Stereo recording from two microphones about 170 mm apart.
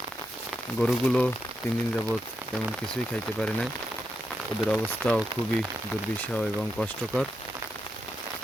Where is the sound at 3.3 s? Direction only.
5° left (ahead or behind).